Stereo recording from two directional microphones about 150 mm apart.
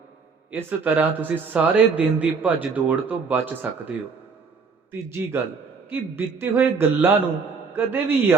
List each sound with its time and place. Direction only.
0.5 s speech: 15° right (ahead or behind)
4.9 s speech: 15° right (ahead or behind)